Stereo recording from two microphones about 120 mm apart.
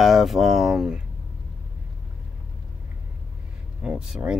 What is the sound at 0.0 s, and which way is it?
Speech, centre (ahead or behind).